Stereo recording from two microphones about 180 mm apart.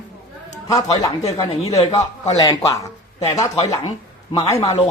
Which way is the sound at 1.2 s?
35° left (ahead or behind).